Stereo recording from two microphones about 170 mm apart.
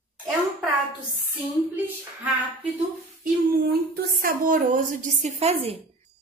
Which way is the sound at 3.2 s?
60° right (ahead or behind).